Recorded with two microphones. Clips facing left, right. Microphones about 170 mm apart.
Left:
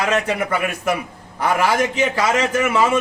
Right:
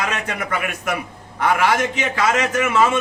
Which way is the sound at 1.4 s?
35° left (ahead or behind).